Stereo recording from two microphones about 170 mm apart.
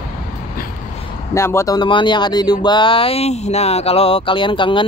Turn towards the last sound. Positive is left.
turn(degrees=30)  # may be behind; listen again after turning